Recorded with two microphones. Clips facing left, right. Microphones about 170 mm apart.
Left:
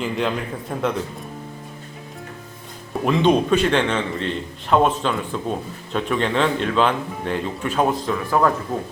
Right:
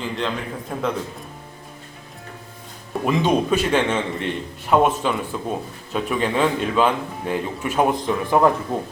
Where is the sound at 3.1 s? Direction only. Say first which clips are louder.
Left 2 dB; 5° right (ahead or behind).